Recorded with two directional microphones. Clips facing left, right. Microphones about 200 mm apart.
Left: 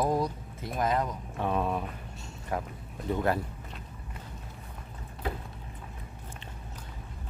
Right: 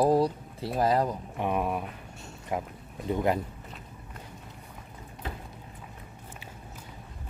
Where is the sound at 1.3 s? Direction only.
15° right (ahead or behind).